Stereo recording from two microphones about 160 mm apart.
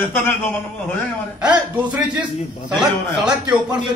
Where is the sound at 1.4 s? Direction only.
5° right (ahead or behind).